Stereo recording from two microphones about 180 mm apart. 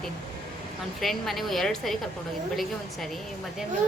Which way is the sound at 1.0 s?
Centre (ahead or behind).